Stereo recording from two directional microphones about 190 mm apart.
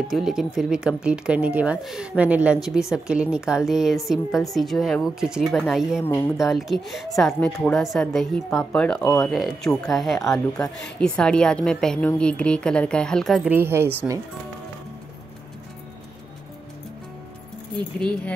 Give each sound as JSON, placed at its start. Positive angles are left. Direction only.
{"t": 0.1, "sound": "speech", "side_deg": 0}
{"t": 6.0, "sound": "speech", "side_deg": 10}
{"t": 6.4, "sound": "speech", "side_deg": 0}
{"t": 9.0, "sound": "speech", "side_deg": 15}
{"t": 9.3, "sound": "speech", "side_deg": 0}
{"t": 17.9, "sound": "speech", "side_deg": 5}